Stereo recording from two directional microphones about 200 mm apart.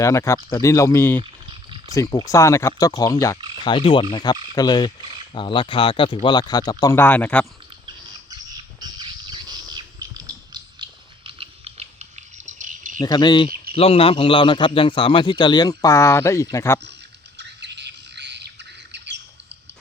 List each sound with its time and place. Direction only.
0.0 s speech: 15° left (ahead or behind)
3.5 s frog: 25° left (ahead or behind)
4.1 s a man's voice: 20° left (ahead or behind)
8.3 s bird: 20° right (ahead or behind)
12.5 s cricket: 40° right (ahead or behind)
13.0 s a man's voice: 20° left (ahead or behind)
17.3 s squawk: 60° right (ahead or behind)